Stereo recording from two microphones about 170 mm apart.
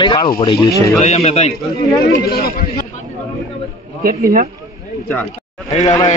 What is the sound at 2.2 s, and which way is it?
Speech, 65° left (ahead or behind).